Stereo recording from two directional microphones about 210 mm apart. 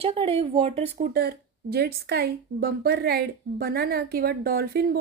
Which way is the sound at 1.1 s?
45° right (ahead or behind).